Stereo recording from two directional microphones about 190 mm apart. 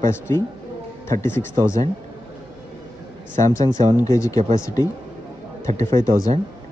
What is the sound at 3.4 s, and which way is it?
Speech, 15° left (ahead or behind).